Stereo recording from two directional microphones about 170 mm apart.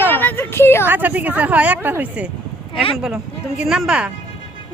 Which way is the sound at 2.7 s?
30° left (ahead or behind).